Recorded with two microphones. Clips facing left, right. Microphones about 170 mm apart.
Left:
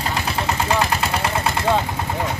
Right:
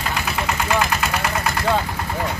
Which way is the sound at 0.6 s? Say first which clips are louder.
Even; 30° left (ahead or behind).